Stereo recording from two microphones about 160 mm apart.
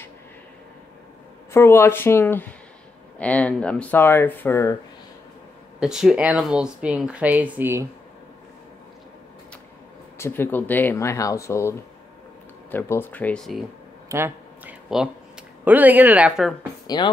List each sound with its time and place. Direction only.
1.5 s speech: 15° left (ahead or behind)
5.8 s speech: 5° right (ahead or behind)
10.1 s speech: 15° left (ahead or behind)
12.7 s speech: 15° left (ahead or behind)
14.0 s a sound: 15° right (ahead or behind)
15.6 s speech: 10° right (ahead or behind)
16.8 s speech: 30° left (ahead or behind)